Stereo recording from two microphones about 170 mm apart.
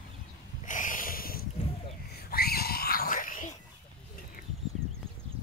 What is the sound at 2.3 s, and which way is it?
Pig, 65° left (ahead or behind).